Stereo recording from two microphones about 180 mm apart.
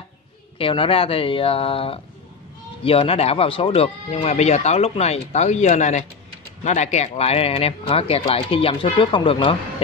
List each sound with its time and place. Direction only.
0.6 s speech: 30° left (ahead or behind)